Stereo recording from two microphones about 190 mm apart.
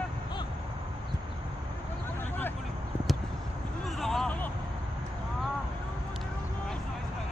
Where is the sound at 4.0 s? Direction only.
Centre (ahead or behind).